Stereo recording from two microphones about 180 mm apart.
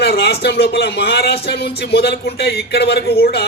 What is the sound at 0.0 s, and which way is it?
A man's voice, 65° left (ahead or behind).